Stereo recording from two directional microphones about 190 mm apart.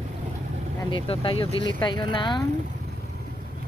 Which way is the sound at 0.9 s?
30° left (ahead or behind).